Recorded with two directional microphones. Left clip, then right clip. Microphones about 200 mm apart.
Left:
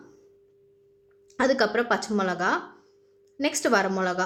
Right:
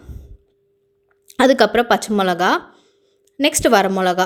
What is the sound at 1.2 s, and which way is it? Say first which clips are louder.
A woman's voice: right 9 dB; 40° right (ahead or behind).